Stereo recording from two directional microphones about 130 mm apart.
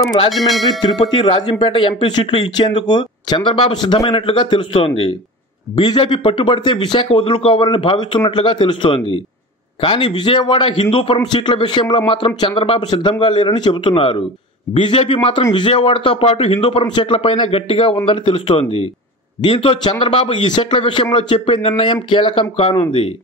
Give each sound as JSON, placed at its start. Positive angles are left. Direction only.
{"t": 0.3, "sound": "speech", "side_deg": 0}
{"t": 0.9, "sound": "speech", "side_deg": 40}